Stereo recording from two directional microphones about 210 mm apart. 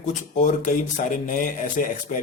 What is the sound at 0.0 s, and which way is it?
Speech, 35° left (ahead or behind).